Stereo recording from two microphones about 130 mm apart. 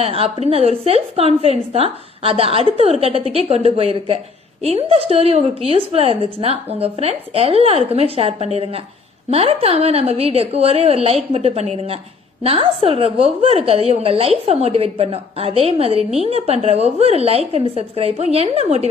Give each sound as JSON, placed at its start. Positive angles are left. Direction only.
{"t": 0.0, "sound": "a woman's voice", "side_deg": -50}